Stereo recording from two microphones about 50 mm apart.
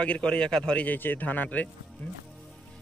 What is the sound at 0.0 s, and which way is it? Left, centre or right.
Speech, left.